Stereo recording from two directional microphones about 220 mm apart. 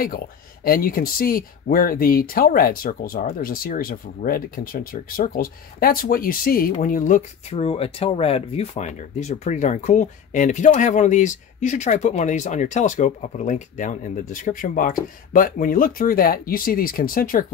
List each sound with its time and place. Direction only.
0.0 s speech: 40° left (ahead or behind)